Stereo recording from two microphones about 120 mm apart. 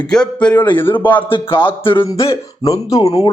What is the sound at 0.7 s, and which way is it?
Speech, 45° left (ahead or behind).